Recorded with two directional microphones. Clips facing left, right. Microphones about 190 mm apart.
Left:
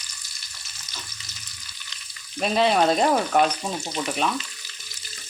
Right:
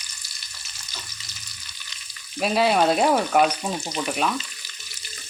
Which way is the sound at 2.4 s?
5° right (ahead or behind).